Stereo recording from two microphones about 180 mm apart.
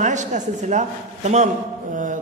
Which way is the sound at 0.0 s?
40° right (ahead or behind).